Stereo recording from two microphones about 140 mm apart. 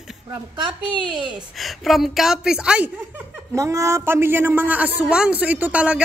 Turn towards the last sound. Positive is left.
turn(degrees=-10)  # may be behind; listen again after turning